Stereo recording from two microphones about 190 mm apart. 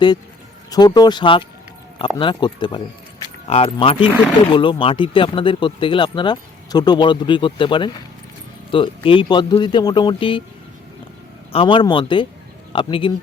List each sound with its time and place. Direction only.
0.7 s speech: 20° left (ahead or behind)
11.5 s speech: 25° left (ahead or behind)